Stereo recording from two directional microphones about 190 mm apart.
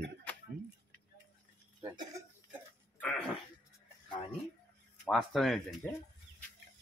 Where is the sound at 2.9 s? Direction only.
5° left (ahead or behind).